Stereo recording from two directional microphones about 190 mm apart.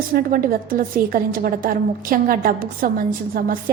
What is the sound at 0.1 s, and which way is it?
A woman's voice, 50° right (ahead or behind).